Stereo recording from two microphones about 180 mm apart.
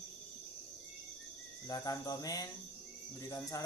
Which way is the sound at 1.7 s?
20° left (ahead or behind).